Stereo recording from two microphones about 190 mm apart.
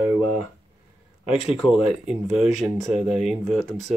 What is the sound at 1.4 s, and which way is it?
Speech, 30° left (ahead or behind).